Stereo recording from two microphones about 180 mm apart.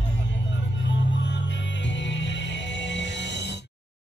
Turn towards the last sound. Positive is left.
turn(degrees=80)